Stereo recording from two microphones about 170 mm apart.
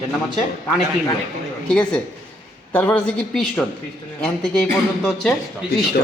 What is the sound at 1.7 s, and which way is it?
A woman's voice, 5° left (ahead or behind).